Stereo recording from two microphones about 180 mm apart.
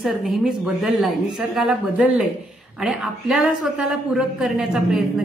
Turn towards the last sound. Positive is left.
turn(degrees=0)  # may be behind; listen again after turning